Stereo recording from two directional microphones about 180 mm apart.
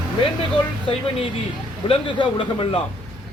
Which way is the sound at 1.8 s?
30° left (ahead or behind).